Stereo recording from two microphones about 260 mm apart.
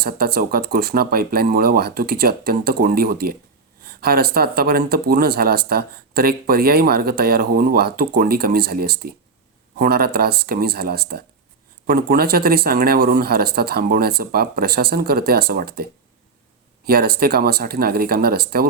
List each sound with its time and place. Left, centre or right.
0.0 s speech: right